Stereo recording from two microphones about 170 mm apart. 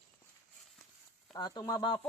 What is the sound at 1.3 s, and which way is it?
Speech, 25° left (ahead or behind).